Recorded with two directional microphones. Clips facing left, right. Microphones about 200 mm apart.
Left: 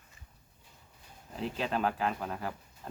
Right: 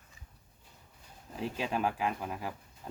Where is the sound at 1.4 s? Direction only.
10° right (ahead or behind).